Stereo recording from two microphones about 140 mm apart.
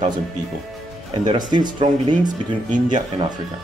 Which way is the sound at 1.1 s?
35° right (ahead or behind).